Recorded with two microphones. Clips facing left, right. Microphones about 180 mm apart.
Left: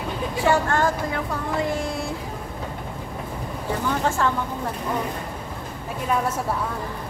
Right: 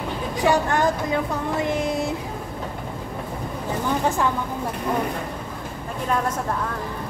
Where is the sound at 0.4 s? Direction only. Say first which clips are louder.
Right 1 dB; 15° right (ahead or behind).